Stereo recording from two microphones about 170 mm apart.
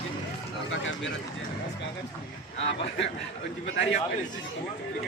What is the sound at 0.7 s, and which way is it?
Speech, 90° left.